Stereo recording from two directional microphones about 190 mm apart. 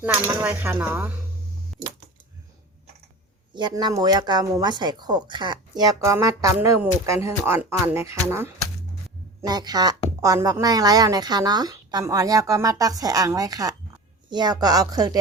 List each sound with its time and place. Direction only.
0.3 s speech: 10° right (ahead or behind)
3.5 s speech: 25° right (ahead or behind)
9.4 s speech: 20° right (ahead or behind)